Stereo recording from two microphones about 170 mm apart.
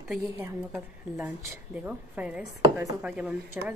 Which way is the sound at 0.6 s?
10° right (ahead or behind).